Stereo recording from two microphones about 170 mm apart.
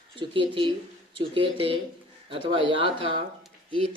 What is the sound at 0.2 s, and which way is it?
Speech, 30° right (ahead or behind).